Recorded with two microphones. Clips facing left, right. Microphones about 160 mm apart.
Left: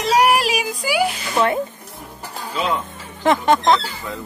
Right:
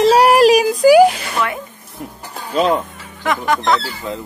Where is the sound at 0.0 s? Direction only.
35° right (ahead or behind).